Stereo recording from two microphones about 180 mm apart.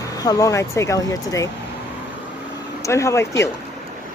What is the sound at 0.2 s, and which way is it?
Speech, 20° left (ahead or behind).